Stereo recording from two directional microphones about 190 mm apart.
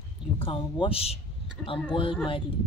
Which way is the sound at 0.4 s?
30° left (ahead or behind).